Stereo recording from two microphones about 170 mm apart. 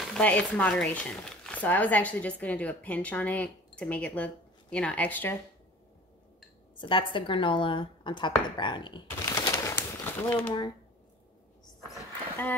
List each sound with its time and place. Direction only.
0.1 s speech: 10° left (ahead or behind)
6.8 s speech: 30° left (ahead or behind); by 10.5 s 10° left (ahead or behind)